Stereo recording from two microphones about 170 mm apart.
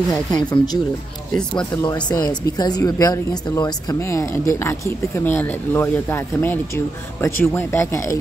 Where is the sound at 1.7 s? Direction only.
20° left (ahead or behind).